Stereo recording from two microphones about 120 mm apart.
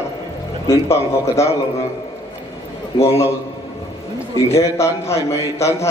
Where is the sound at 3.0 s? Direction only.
20° left (ahead or behind).